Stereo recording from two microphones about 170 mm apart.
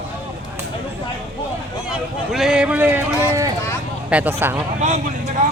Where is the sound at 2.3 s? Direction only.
5° right (ahead or behind).